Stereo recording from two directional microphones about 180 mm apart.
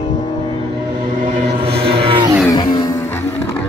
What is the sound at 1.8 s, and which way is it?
Music, 30° right (ahead or behind).